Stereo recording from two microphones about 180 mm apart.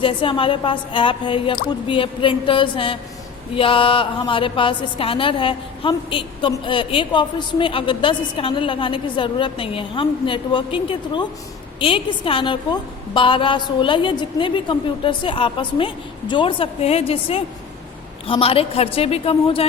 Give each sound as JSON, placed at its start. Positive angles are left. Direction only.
{"t": 0.0, "sound": "a woman's voice", "side_deg": 30}